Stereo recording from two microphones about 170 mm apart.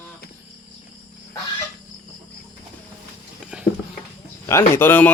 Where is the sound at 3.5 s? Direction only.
5° right (ahead or behind).